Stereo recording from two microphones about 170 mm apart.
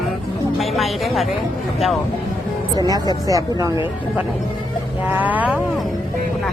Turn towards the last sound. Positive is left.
turn(degrees=-10)  # may be behind; listen again after turning